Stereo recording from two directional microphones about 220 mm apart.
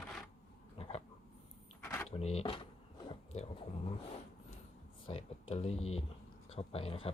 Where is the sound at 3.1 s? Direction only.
25° left (ahead or behind).